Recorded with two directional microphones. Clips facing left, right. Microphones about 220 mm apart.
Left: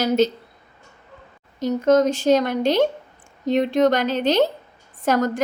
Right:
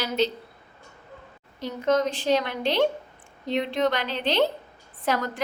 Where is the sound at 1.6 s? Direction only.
45° left (ahead or behind).